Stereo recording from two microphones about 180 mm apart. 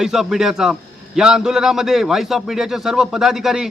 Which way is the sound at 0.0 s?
Centre (ahead or behind).